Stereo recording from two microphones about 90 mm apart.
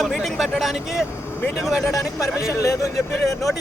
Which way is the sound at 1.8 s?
40° left (ahead or behind).